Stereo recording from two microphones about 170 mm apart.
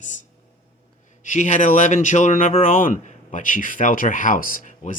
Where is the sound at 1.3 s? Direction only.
45° left (ahead or behind).